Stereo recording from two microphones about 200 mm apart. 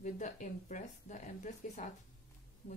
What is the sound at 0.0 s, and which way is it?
A woman's voice, 40° left (ahead or behind).